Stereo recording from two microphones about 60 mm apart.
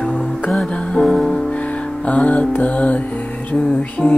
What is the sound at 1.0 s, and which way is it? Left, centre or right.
Music, centre.